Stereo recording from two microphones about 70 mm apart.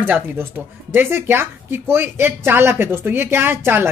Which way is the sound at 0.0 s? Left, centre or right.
Right.